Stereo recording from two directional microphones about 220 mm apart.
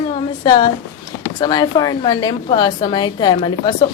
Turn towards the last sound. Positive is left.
turn(degrees=20)  # may be behind; listen again after turning